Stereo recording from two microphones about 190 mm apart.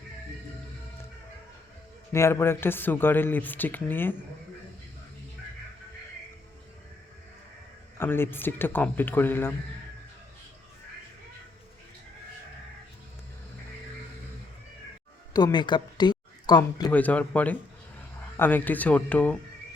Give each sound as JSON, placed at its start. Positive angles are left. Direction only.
{"t": 2.1, "sound": "speech", "side_deg": 15}
{"t": 7.9, "sound": "speech", "side_deg": 10}
{"t": 15.3, "sound": "speech", "side_deg": 20}
{"t": 16.9, "sound": "speech", "side_deg": 10}